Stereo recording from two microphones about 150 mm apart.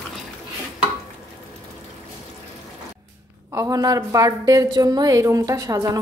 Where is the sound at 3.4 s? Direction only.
20° right (ahead or behind).